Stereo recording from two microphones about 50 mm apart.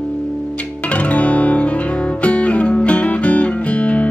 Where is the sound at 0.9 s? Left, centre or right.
Left.